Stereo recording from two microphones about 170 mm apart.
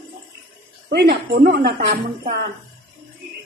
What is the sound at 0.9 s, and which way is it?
Speech, 75° right (ahead or behind).